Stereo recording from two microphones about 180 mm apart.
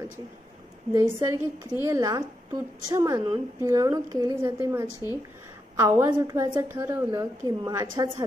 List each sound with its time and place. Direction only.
0.9 s a woman's voice: 15° right (ahead or behind)